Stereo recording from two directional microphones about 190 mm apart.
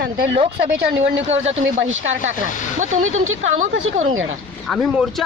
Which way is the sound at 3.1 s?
90° right.